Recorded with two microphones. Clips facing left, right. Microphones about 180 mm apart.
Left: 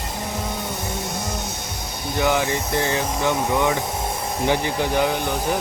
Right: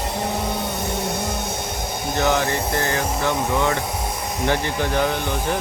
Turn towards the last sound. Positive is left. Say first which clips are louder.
# left 1 dB
turn(degrees=15)  # may be behind; listen again after turning